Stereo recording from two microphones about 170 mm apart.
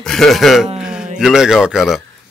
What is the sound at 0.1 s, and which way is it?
A man's voice, centre (ahead or behind).